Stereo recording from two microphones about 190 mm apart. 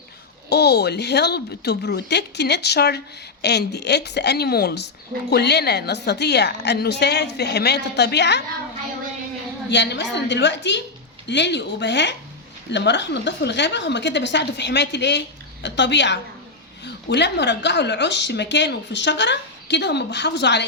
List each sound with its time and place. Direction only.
0.5 s a woman's voice: 60° left (ahead or behind)
9.6 s a woman's voice: 65° left (ahead or behind)